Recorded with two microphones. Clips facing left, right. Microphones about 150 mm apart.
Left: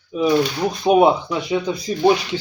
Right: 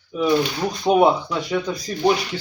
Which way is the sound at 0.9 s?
15° left (ahead or behind).